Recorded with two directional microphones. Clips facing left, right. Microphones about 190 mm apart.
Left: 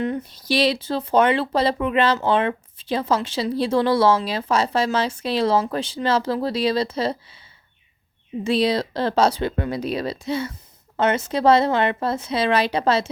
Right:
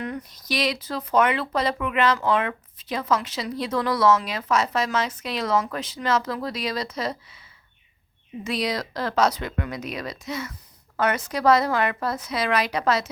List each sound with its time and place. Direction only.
0.0 s speech: 25° left (ahead or behind)
8.4 s speech: 30° left (ahead or behind)